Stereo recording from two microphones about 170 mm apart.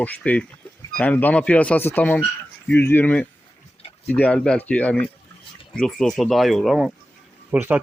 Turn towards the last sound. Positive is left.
turn(degrees=-10)  # may be behind; listen again after turning